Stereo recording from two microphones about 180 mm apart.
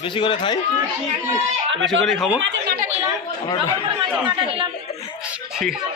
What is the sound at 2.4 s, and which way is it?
Speech, 90° right.